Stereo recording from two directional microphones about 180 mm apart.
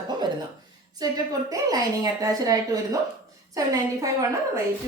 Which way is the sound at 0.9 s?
20° right (ahead or behind).